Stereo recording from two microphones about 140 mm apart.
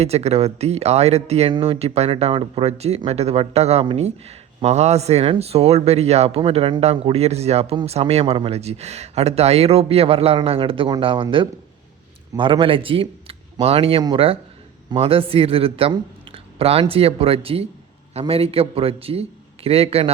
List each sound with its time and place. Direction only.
0.0 s a man's voice: 50° right (ahead or behind)